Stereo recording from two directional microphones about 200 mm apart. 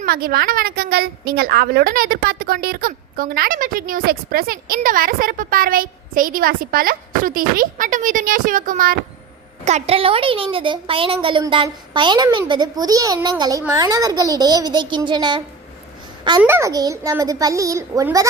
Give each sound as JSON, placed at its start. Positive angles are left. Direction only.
{"t": 0.0, "sound": "a woman's voice", "side_deg": -50}
{"t": 9.6, "sound": "a woman's voice", "side_deg": -35}
{"t": 16.4, "sound": "a child's voice", "side_deg": -10}